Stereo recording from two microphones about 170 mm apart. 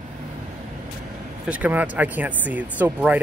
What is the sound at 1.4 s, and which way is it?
Speech, 10° right (ahead or behind).